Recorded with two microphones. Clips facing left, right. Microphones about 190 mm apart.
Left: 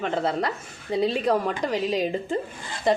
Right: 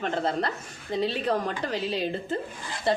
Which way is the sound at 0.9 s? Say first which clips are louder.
Left 3 dB; 10° left (ahead or behind).